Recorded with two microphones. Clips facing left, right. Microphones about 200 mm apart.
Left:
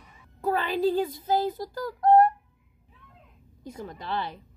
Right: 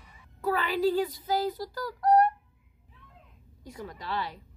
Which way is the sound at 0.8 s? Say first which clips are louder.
Even; 50° left (ahead or behind).